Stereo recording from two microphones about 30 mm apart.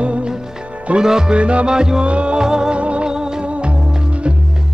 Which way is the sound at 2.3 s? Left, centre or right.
Right.